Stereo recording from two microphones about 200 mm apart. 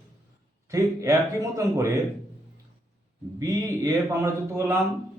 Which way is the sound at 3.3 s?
15° right (ahead or behind).